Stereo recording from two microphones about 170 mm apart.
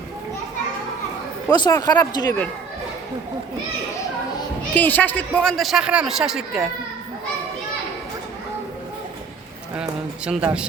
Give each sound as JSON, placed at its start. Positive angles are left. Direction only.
{"t": 1.5, "sound": "speech", "side_deg": 25}
{"t": 4.7, "sound": "a man's voice", "side_deg": 10}
{"t": 9.7, "sound": "a man's voice", "side_deg": -5}